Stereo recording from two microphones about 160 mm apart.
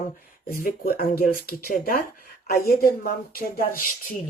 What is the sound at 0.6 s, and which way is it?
Speech, 70° left (ahead or behind).